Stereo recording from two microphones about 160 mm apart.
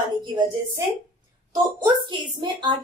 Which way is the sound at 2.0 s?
30° right (ahead or behind).